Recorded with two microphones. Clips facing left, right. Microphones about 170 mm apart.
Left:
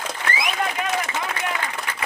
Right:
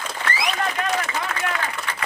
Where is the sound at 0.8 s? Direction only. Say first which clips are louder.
Right 1 dB; 15° left (ahead or behind).